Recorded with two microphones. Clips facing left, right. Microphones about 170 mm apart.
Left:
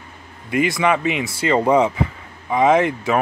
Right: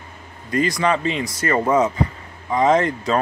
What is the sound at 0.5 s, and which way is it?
Speech, 10° left (ahead or behind).